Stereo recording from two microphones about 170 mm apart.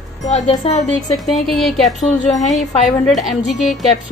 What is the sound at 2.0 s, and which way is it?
Wind chime, 45° left (ahead or behind).